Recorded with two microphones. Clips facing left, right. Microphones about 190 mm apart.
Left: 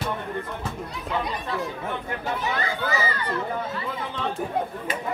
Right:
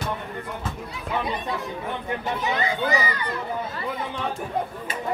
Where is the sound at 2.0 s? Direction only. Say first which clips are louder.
Right 3 dB; 20° right (ahead or behind).